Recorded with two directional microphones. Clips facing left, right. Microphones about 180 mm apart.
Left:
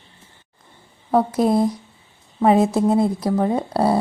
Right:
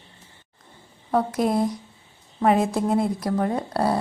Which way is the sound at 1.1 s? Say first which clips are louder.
Left 4 dB; 30° left (ahead or behind).